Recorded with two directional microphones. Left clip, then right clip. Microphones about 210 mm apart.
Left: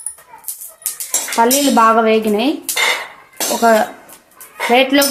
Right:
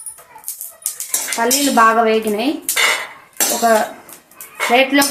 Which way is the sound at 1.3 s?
45° left (ahead or behind).